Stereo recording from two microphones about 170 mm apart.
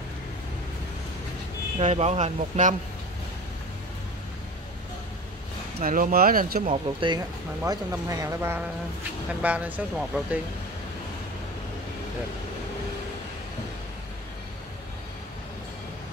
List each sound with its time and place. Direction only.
1.8 s speech: 40° right (ahead or behind)
5.8 s speech: 50° right (ahead or behind)
6.7 s speech: 30° right (ahead or behind)
7.6 s speech: 20° right (ahead or behind)